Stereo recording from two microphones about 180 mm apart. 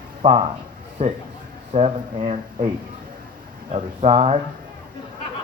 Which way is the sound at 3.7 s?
35° right (ahead or behind).